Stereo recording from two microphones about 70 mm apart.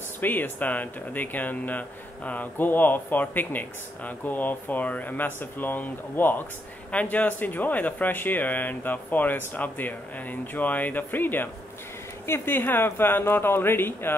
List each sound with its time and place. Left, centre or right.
0.2 s speech: left